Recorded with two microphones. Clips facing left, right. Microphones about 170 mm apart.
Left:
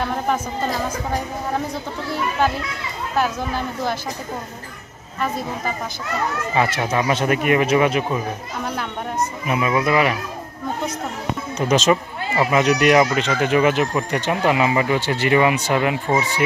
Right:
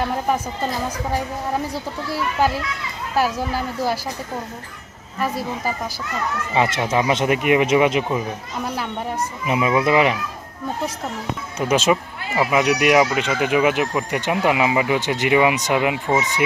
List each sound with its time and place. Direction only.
3.2 s speech: 5° right (ahead or behind)
6.5 s speech: 20° right (ahead or behind)
9.5 s speech: 20° right (ahead or behind)
11.5 s speech: 10° right (ahead or behind)